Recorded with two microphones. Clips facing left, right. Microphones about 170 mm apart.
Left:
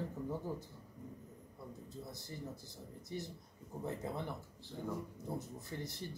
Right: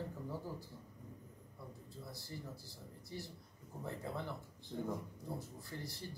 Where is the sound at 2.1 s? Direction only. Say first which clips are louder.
Left 2 dB; 20° left (ahead or behind).